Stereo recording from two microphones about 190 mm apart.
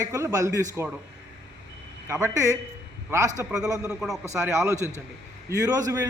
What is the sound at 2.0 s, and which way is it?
A man's voice, 15° right (ahead or behind).